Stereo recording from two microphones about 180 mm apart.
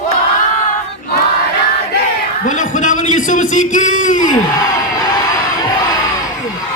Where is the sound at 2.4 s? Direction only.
45° left (ahead or behind).